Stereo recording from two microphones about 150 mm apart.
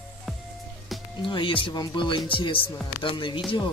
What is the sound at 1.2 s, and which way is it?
Speech, 35° left (ahead or behind).